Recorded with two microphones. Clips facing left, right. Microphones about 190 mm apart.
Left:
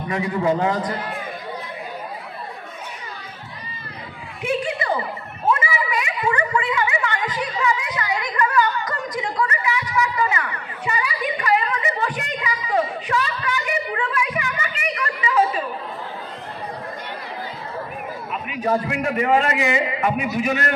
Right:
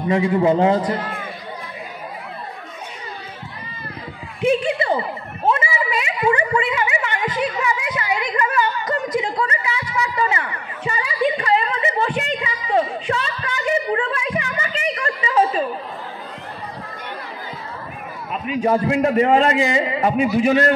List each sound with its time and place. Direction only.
0.1 s a man's voice: 25° right (ahead or behind)
4.4 s chuckle: 25° right (ahead or behind)
5.5 s a sound: 25° right (ahead or behind)
18.5 s a man's voice: 30° right (ahead or behind)